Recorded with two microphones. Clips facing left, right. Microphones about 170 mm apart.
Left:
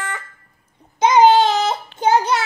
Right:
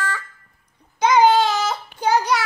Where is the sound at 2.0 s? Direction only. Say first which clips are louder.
Left 2 dB; 25° left (ahead or behind).